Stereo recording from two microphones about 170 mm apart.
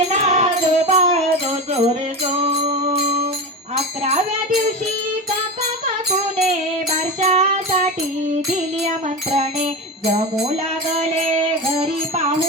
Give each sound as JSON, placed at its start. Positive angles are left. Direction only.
{"t": 0.1, "sound": "music", "side_deg": -40}
{"t": 3.8, "sound": "jingle bell", "side_deg": -40}
{"t": 5.8, "sound": "music", "side_deg": -40}
{"t": 8.8, "sound": "music", "side_deg": -40}